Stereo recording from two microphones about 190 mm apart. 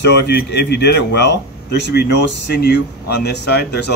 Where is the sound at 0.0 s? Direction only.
60° left (ahead or behind).